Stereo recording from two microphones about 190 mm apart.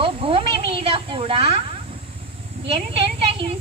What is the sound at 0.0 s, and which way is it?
Snake, 30° right (ahead or behind).